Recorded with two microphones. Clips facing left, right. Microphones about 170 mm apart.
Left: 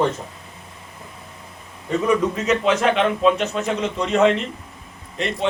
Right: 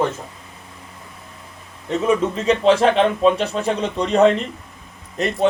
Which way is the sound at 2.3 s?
30° right (ahead or behind).